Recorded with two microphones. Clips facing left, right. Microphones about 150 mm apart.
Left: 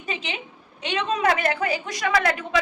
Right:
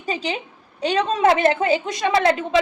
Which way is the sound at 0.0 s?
35° right (ahead or behind).